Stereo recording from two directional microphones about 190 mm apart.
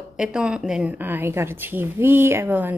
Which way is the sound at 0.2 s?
5° right (ahead or behind).